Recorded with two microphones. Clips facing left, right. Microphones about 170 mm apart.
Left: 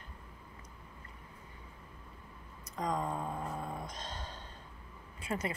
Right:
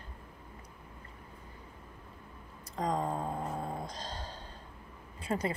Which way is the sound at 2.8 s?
25° right (ahead or behind).